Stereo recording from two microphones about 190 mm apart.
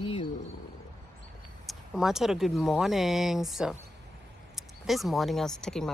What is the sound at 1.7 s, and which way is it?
Speech, centre (ahead or behind).